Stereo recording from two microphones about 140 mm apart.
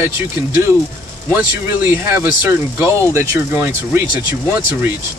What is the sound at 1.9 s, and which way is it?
Speech, 15° right (ahead or behind).